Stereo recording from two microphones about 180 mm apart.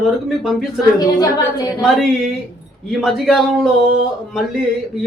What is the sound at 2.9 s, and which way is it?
Speech, centre (ahead or behind).